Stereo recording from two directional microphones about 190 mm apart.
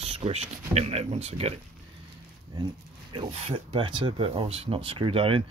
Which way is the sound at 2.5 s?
25° right (ahead or behind).